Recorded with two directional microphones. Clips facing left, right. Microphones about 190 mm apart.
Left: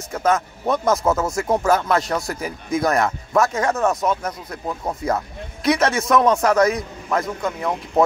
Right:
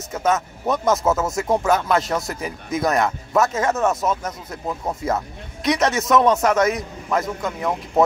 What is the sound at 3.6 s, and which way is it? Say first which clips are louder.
Speech: even; 5° right (ahead or behind).